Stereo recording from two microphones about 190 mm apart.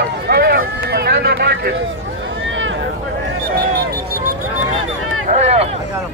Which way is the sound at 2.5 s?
80° right.